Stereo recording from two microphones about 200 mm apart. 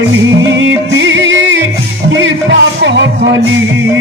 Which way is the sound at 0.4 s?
65° right (ahead or behind).